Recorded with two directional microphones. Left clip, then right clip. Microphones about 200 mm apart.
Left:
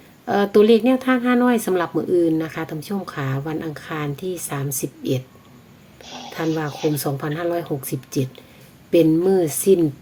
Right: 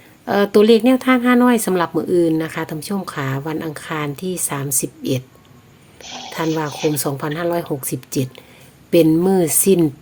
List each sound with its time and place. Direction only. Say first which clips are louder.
0.3 s speech: right 2 dB; 25° right (ahead or behind)